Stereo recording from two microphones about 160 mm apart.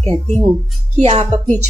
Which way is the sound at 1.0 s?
40° right (ahead or behind).